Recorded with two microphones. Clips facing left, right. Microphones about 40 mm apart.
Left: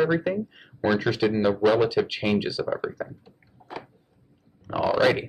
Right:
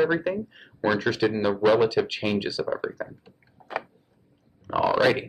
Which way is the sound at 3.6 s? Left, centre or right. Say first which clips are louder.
Right 1 dB; right.